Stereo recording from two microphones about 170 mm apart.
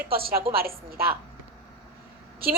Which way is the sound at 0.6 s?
60° right (ahead or behind).